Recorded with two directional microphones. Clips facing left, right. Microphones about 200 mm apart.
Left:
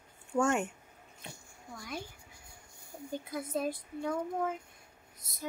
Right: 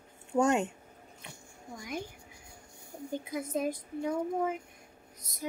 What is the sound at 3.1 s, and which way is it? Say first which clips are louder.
A woman's voice: right 2 dB; 15° right (ahead or behind).